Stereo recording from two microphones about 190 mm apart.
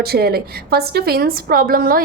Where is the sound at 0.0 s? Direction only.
55° right (ahead or behind).